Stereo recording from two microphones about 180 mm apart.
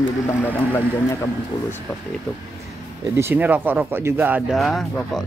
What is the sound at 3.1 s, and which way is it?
Speech, 10° right (ahead or behind).